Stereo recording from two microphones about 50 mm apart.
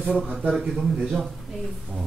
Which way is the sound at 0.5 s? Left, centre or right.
Centre.